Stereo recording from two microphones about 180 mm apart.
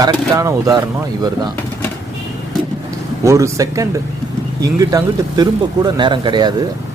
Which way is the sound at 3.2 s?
15° right (ahead or behind).